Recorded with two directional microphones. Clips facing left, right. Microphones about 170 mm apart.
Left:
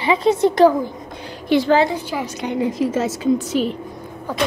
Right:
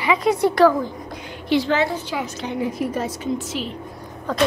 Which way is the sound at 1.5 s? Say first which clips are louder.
Left 4 dB; 50° left (ahead or behind).